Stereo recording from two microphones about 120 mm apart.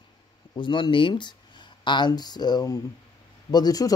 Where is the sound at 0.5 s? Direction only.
40° left (ahead or behind).